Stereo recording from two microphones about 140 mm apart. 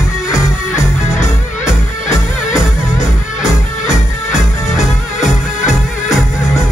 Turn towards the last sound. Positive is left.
turn(degrees=-5)  # may be behind; listen again after turning